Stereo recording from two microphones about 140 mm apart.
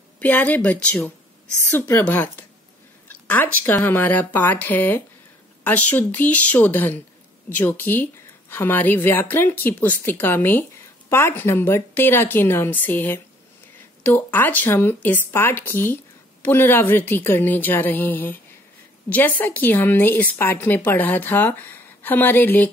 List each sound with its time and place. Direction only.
0.2 s speech: 10° left (ahead or behind)